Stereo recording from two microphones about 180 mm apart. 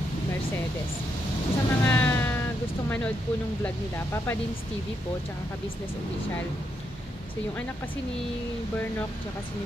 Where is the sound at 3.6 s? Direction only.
15° left (ahead or behind).